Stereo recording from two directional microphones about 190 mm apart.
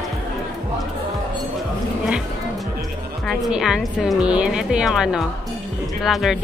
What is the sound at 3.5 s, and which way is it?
A woman's voice, 5° right (ahead or behind).